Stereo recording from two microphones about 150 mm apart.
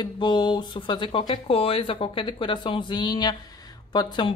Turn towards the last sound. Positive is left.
turn(degrees=30)  # may be behind; listen again after turning